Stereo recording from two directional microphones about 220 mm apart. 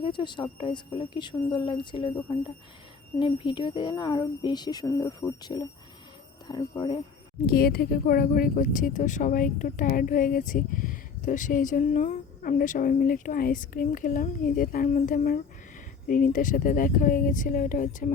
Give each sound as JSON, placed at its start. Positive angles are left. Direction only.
{"t": 0.0, "sound": "speech", "side_deg": 20}
{"t": 3.2, "sound": "speech", "side_deg": 20}
{"t": 7.4, "sound": "speech", "side_deg": 45}